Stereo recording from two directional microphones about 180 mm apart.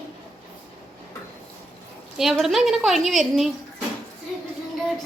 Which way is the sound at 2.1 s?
Centre (ahead or behind).